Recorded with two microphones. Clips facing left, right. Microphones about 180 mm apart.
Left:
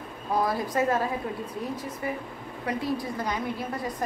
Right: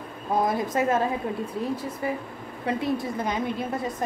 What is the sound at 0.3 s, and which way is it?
Speech, 20° right (ahead or behind).